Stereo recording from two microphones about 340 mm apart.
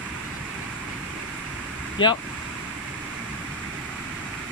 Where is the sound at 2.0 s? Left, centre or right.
Centre.